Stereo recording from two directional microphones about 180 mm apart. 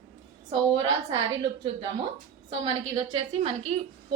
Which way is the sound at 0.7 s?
25° right (ahead or behind).